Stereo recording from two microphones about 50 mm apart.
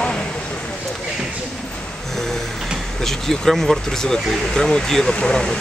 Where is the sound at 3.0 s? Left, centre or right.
Centre.